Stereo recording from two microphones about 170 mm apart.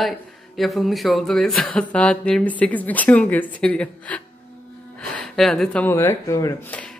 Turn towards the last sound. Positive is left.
turn(degrees=10)  # may be behind; listen again after turning